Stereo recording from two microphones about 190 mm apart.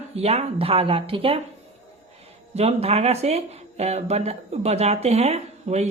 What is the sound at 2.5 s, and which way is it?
Speech, 35° right (ahead or behind).